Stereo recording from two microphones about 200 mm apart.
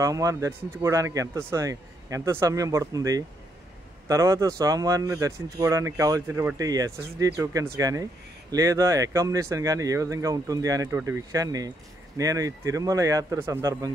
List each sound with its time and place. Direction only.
0.0 s speech: 15° right (ahead or behind)